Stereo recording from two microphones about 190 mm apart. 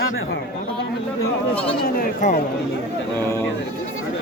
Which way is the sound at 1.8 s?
50° left (ahead or behind).